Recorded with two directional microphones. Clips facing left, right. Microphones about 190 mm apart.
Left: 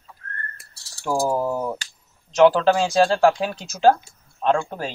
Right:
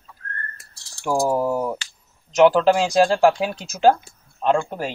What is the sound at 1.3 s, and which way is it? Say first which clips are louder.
Speech: right 2 dB; 10° right (ahead or behind).